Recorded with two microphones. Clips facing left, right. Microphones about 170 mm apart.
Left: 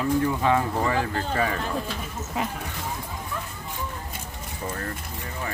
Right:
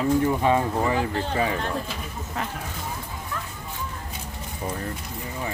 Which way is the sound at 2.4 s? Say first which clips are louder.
Left 3 dB; 10° left (ahead or behind).